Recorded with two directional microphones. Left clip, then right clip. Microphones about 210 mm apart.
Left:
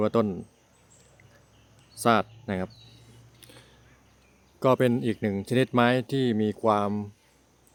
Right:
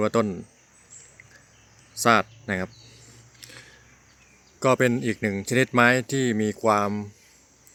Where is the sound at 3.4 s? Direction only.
5° left (ahead or behind).